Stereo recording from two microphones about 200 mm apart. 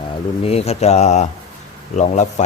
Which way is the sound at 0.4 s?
30° left (ahead or behind).